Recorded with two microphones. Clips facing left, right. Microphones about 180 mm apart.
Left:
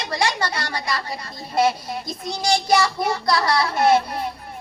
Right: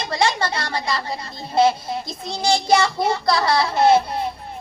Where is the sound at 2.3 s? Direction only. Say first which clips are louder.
Right 2 dB; 25° right (ahead or behind).